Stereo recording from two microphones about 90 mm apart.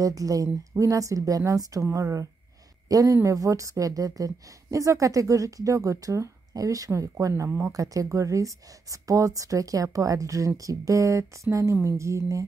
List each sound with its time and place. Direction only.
0.0 s a woman's voice: 40° right (ahead or behind)